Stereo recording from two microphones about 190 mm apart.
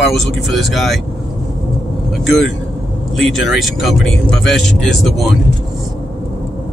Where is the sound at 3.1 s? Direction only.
Centre (ahead or behind).